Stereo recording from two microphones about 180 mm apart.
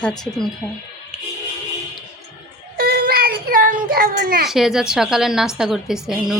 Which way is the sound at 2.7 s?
55° right (ahead or behind).